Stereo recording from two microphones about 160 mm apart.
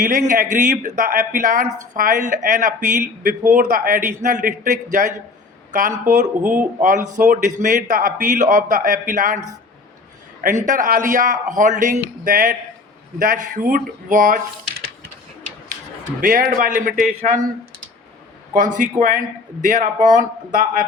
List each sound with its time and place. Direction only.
0.0 s speech: 55° right (ahead or behind)
6.4 s speech: 10° right (ahead or behind)
6.8 s speech: 55° right (ahead or behind)
10.7 s speech: 55° right (ahead or behind)
16.2 s speech: 60° right (ahead or behind); by 17.4 s 45° right (ahead or behind)
18.5 s speech: 55° right (ahead or behind)